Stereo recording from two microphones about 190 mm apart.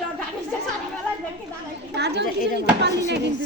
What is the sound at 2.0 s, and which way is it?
Speech, 65° right (ahead or behind).